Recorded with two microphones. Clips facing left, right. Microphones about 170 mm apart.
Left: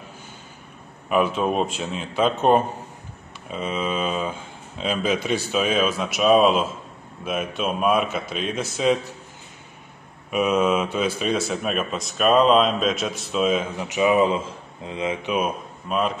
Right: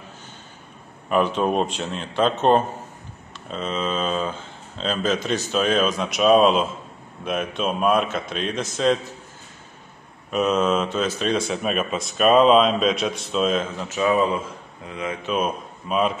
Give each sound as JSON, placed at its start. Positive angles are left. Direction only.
{"t": 1.0, "sound": "speech", "side_deg": 5}
{"t": 10.3, "sound": "speech", "side_deg": 10}
{"t": 15.2, "sound": "speech", "side_deg": 10}
{"t": 15.9, "sound": "speech", "side_deg": 0}